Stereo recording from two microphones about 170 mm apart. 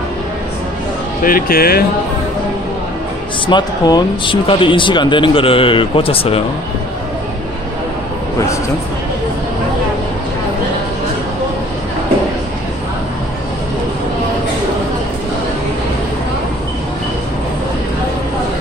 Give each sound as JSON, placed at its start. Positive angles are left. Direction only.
{"t": 1.2, "sound": "speech", "side_deg": 60}
{"t": 3.4, "sound": "speech", "side_deg": 25}